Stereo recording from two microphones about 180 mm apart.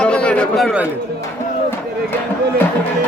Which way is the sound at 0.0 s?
5° left (ahead or behind).